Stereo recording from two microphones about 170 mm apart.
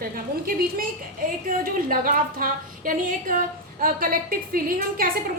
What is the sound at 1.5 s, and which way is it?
A woman's voice, 55° right (ahead or behind).